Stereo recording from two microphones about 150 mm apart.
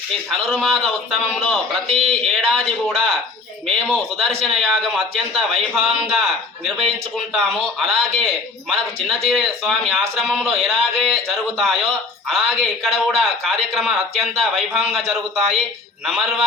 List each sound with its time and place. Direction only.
0.3 s a man's voice: centre (ahead or behind)